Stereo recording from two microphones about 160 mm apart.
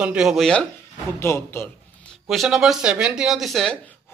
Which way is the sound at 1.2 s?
15° left (ahead or behind).